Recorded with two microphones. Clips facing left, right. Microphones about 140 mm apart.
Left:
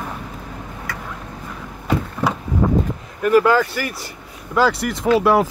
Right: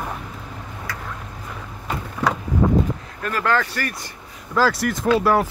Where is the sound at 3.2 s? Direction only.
10° left (ahead or behind).